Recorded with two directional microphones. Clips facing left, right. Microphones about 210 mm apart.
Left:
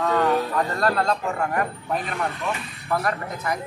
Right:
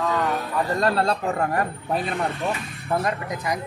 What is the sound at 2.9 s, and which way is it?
Speech, 20° right (ahead or behind).